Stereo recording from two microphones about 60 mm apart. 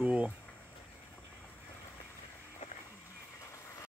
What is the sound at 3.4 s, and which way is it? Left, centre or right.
Vehicle, left.